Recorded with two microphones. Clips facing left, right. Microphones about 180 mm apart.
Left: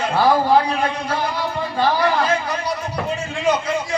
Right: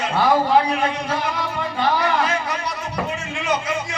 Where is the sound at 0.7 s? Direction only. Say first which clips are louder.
Even; 30° left (ahead or behind).